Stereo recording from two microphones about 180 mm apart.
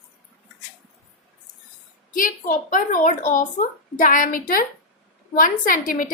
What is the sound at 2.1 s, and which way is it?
A woman's voice, 50° left (ahead or behind).